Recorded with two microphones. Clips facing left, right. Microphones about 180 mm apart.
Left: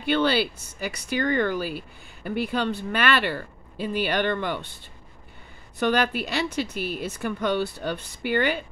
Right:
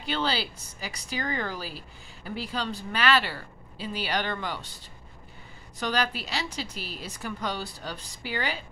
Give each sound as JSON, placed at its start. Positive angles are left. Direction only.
{"t": 0.0, "sound": "speech", "side_deg": 60}
{"t": 5.8, "sound": "speech", "side_deg": 60}